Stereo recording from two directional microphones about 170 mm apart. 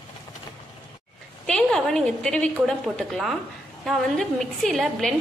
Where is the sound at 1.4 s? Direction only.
5° left (ahead or behind).